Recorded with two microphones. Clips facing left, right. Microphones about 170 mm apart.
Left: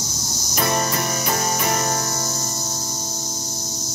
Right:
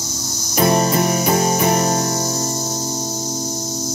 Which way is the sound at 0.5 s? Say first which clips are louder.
Right 7 dB; 25° right (ahead or behind).